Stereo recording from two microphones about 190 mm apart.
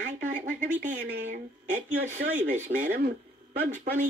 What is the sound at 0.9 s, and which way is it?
Speech, 40° right (ahead or behind).